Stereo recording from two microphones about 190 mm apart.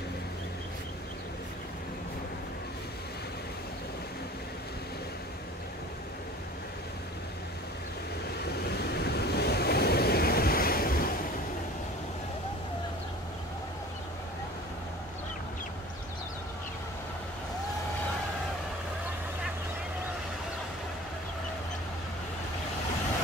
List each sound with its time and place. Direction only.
8.6 s waves: 60° left (ahead or behind)